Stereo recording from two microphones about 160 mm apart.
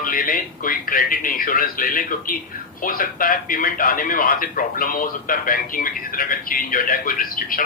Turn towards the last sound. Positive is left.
turn(degrees=60)  # may be behind; listen again after turning